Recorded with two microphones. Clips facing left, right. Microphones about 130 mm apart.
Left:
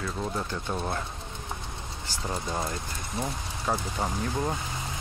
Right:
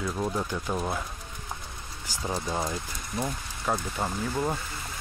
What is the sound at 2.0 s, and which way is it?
Speech, 5° right (ahead or behind).